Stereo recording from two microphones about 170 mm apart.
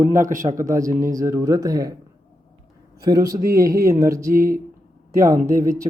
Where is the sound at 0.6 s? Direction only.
20° right (ahead or behind).